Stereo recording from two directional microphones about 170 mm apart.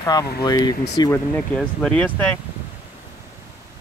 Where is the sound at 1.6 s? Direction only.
5° left (ahead or behind).